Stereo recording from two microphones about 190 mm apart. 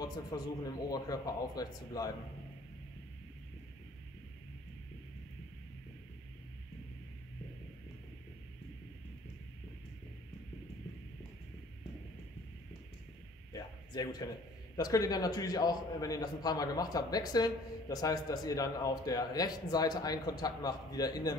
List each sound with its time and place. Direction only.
0.3 s a man's voice: 20° left (ahead or behind)
13.5 s a sound: 20° left (ahead or behind)
14.8 s a man's voice: 20° left (ahead or behind)